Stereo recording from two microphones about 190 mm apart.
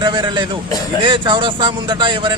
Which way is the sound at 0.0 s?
25° right (ahead or behind).